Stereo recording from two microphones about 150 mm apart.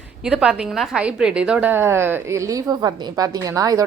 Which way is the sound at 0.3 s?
5° right (ahead or behind).